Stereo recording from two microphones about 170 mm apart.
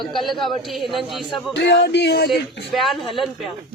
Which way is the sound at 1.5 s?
90° left.